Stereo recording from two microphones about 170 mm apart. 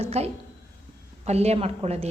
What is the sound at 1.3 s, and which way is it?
Speech, 40° right (ahead or behind).